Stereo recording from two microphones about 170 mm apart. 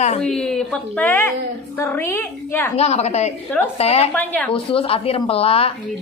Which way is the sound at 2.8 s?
40° left (ahead or behind).